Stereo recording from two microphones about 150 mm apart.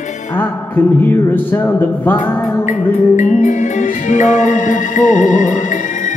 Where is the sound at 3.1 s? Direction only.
55° left (ahead or behind).